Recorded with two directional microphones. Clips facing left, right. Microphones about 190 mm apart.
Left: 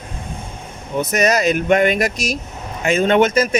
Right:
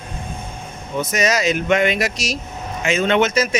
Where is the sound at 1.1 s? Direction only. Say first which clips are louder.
Left 3 dB; 55° left (ahead or behind).